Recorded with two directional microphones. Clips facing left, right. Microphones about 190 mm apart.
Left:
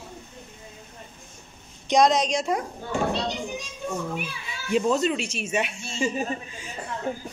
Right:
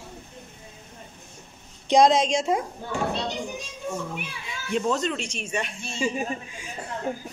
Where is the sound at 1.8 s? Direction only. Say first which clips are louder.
Right 2 dB; 30° right (ahead or behind).